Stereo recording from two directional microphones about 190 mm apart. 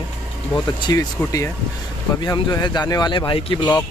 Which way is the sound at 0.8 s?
15° left (ahead or behind).